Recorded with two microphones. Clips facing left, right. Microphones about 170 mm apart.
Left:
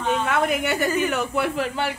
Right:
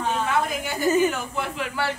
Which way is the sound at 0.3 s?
70° left (ahead or behind).